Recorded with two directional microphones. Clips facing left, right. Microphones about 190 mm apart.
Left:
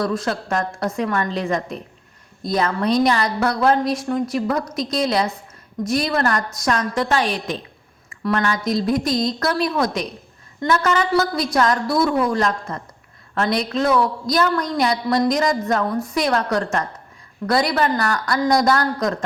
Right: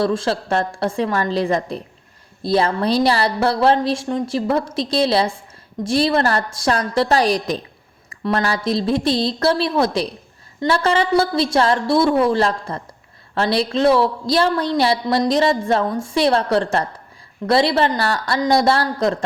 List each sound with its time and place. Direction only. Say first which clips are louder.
0.0 s a woman's voice: right 3 dB; 30° right (ahead or behind)